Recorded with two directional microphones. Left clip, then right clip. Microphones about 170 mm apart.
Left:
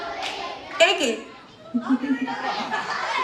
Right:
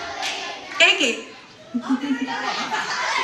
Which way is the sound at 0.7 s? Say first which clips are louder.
Right 2 dB; 45° left (ahead or behind).